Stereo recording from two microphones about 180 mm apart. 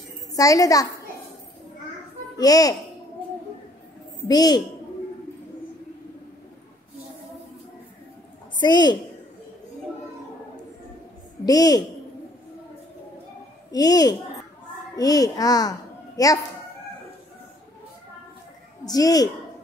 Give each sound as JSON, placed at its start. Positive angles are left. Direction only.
{"t": 0.4, "sound": "a child's voice", "side_deg": 20}
{"t": 2.3, "sound": "a child's voice", "side_deg": 20}
{"t": 4.3, "sound": "a child's voice", "side_deg": 20}
{"t": 8.5, "sound": "a child's voice", "side_deg": 25}
{"t": 11.4, "sound": "a child's voice", "side_deg": 20}
{"t": 13.7, "sound": "a child's voice", "side_deg": 20}
{"t": 18.9, "sound": "a child's voice", "side_deg": 20}